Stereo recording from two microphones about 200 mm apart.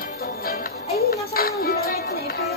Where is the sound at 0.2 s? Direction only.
50° left (ahead or behind).